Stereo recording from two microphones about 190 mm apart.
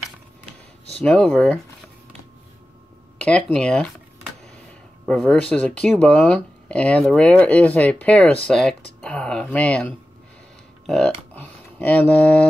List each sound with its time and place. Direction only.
0.9 s speech: 5° left (ahead or behind)
3.2 s speech: 5° left (ahead or behind)
5.0 s speech: centre (ahead or behind)